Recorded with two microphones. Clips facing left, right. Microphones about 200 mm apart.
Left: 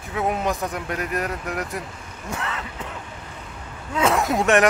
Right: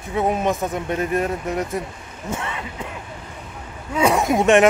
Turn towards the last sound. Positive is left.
turn(degrees=-20)  # may be behind; listen again after turning